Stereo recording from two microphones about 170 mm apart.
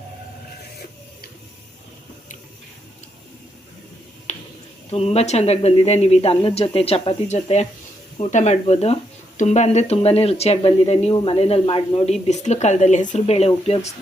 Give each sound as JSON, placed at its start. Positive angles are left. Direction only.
{"t": 4.3, "sound": "finger snapping", "side_deg": 40}
{"t": 4.9, "sound": "speech", "side_deg": 35}